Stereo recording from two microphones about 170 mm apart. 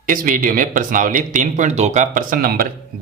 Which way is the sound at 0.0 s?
55° right (ahead or behind).